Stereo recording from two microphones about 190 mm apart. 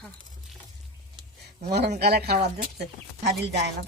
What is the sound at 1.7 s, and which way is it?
Speech, 60° right (ahead or behind).